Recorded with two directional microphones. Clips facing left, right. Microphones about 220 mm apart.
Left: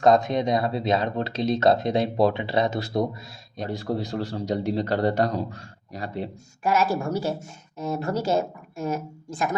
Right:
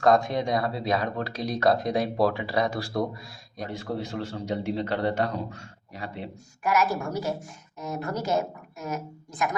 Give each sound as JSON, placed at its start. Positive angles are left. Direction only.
{"t": 0.0, "sound": "speech", "side_deg": 20}
{"t": 3.6, "sound": "a man's voice", "side_deg": 35}
{"t": 6.6, "sound": "speech", "side_deg": 30}